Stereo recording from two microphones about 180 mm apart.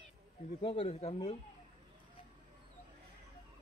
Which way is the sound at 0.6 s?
30° left (ahead or behind).